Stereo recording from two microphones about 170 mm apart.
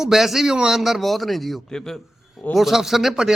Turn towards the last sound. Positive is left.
turn(degrees=0)  # may be behind; listen again after turning